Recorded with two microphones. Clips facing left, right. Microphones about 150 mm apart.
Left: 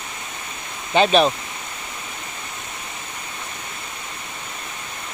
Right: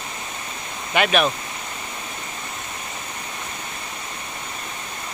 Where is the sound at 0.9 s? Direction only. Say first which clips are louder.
Left 4 dB; 30° left (ahead or behind).